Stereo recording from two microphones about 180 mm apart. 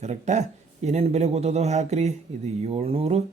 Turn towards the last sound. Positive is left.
turn(degrees=-35)  # may be behind; listen again after turning